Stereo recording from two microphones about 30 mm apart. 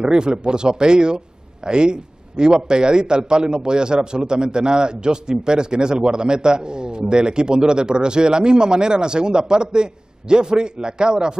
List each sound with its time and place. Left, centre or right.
0.0 s a man's voice: right